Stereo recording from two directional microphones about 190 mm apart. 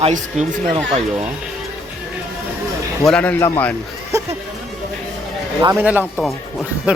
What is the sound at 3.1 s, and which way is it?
Speech, 5° left (ahead or behind).